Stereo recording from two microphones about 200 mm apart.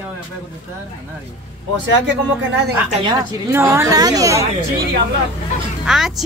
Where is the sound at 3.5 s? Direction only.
15° right (ahead or behind).